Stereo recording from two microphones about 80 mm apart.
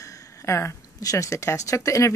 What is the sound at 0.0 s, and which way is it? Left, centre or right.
Speech, left.